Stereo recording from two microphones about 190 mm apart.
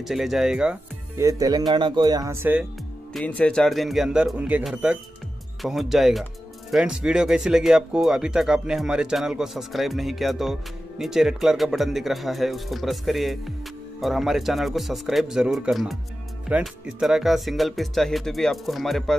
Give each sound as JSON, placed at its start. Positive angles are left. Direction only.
{"t": 0.0, "sound": "speech", "side_deg": 0}
{"t": 1.1, "sound": "speech", "side_deg": -20}
{"t": 3.1, "sound": "speech", "side_deg": 5}